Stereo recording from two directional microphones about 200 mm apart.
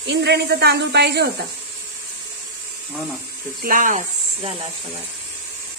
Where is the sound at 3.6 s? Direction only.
45° right (ahead or behind).